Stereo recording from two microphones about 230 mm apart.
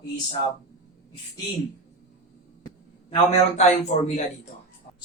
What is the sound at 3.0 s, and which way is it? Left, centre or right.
A man's voice, left.